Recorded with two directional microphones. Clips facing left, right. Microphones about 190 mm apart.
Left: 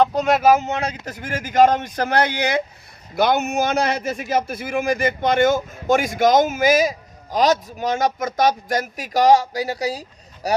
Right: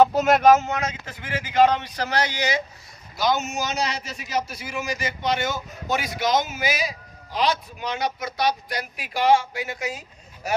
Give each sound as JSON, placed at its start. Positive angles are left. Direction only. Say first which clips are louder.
{"t": 0.0, "sound": "speech", "louder": "even", "side_deg": -5}
{"t": 0.5, "sound": "speech", "louder": "left 1 dB", "side_deg": 15}
{"t": 0.8, "sound": "a man's voice", "louder": "left 3 dB", "side_deg": 35}